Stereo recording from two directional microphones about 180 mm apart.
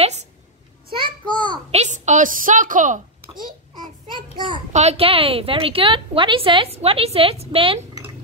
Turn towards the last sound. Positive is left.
turn(degrees=-30)  # may be behind; listen again after turning